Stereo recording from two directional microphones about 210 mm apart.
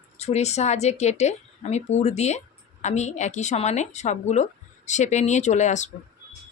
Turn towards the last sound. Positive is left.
turn(degrees=35)  # may be behind; listen again after turning